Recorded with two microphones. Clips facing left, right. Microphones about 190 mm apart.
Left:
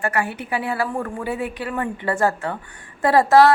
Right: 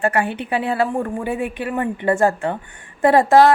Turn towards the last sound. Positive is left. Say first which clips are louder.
# right 2 dB
turn(degrees=-25)  # may be behind; listen again after turning